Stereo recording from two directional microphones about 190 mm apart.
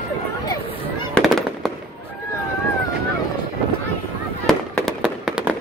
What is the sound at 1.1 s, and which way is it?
Fireworks, centre (ahead or behind).